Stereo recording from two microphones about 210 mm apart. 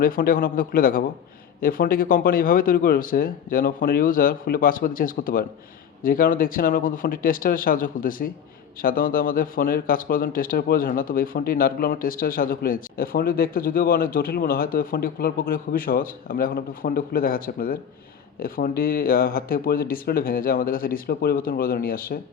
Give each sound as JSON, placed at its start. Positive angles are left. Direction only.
{"t": 0.0, "sound": "speech", "side_deg": 40}